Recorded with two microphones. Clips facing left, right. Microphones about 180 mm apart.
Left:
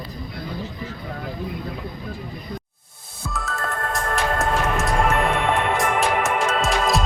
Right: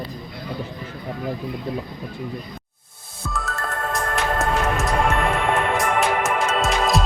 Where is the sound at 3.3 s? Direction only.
Centre (ahead or behind).